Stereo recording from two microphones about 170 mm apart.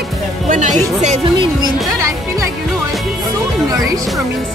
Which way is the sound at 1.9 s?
20° right (ahead or behind).